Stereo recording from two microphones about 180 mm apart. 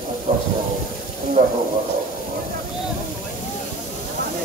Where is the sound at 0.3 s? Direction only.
35° right (ahead or behind).